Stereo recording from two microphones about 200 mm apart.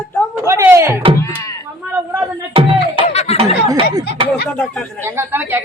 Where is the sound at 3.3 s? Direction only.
25° right (ahead or behind).